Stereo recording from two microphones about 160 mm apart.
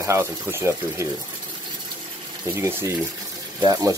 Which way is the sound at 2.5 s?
20° right (ahead or behind).